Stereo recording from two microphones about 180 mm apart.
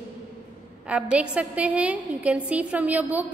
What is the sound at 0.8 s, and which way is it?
A woman's voice, 5° right (ahead or behind).